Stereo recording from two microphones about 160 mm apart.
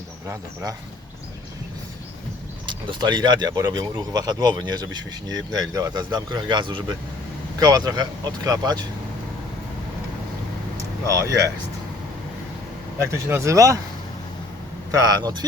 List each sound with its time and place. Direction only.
0.3 s speech: 20° right (ahead or behind)
2.6 s speech: 30° right (ahead or behind)
11.0 s speech: 20° right (ahead or behind)
13.1 s speech: 20° right (ahead or behind)
14.9 s speech: 25° right (ahead or behind)